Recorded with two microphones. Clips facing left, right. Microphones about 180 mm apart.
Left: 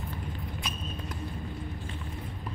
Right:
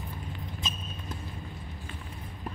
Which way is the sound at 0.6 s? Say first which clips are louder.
Left 2 dB; 25° right (ahead or behind).